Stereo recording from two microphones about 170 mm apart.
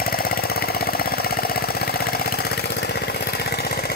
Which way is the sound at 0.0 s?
60° left (ahead or behind).